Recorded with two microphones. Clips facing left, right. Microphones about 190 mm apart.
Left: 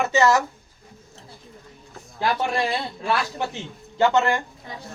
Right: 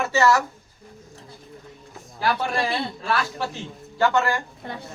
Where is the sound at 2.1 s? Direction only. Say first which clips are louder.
Left 1 dB; 20° left (ahead or behind).